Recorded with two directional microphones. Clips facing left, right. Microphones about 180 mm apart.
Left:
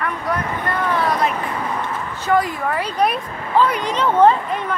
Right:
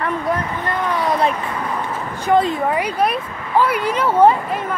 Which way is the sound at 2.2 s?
20° right (ahead or behind).